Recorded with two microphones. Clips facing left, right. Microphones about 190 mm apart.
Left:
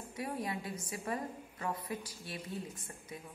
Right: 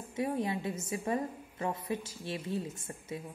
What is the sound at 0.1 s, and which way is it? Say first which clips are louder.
A woman's voice: right 6 dB; 25° right (ahead or behind).